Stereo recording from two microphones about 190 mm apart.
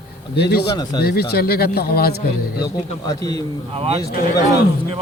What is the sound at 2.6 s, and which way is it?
Speech, 20° left (ahead or behind).